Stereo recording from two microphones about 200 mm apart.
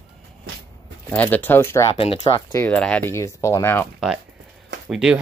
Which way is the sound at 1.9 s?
30° left (ahead or behind).